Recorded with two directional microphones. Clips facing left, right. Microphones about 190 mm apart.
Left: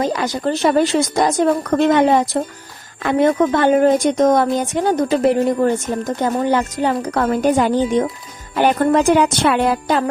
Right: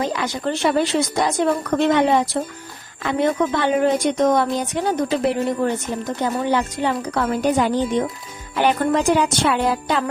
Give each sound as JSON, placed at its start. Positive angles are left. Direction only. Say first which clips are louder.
{"t": 0.0, "sound": "a woman's voice", "louder": "left 4 dB", "side_deg": 40}